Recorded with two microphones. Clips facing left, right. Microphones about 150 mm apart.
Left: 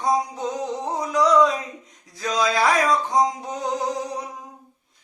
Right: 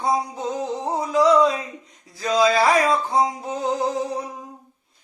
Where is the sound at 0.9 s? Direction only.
25° right (ahead or behind).